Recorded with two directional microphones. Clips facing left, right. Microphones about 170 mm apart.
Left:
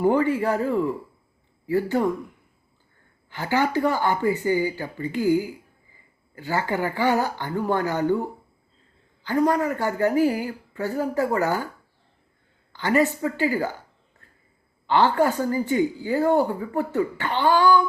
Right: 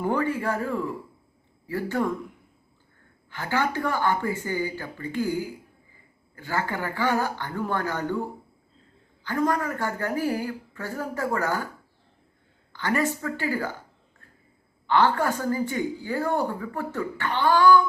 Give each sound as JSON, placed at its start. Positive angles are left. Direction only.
{"t": 0.0, "sound": "speech", "side_deg": 20}
{"t": 3.2, "sound": "a woman's voice", "side_deg": 15}
{"t": 6.3, "sound": "speech", "side_deg": 15}
{"t": 9.2, "sound": "speech", "side_deg": 15}
{"t": 12.8, "sound": "speech", "side_deg": 15}
{"t": 14.8, "sound": "a woman's voice", "side_deg": 15}